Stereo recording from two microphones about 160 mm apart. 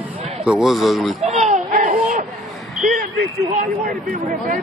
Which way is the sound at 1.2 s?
45° right (ahead or behind).